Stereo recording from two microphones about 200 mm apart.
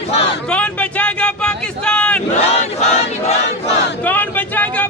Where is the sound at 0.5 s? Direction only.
5° left (ahead or behind).